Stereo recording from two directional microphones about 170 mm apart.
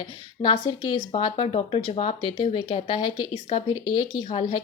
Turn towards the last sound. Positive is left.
turn(degrees=30)  # may be behind; listen again after turning